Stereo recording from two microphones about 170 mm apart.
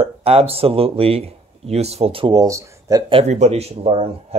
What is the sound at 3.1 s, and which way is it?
Speech, 40° right (ahead or behind).